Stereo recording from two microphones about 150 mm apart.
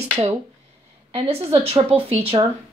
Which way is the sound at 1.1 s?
40° right (ahead or behind).